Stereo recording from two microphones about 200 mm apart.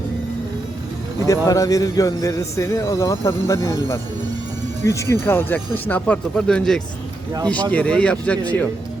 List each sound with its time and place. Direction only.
1.2 s a man's voice: 15° left (ahead or behind)